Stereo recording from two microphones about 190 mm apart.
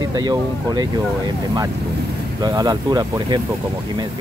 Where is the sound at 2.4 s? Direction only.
20° right (ahead or behind).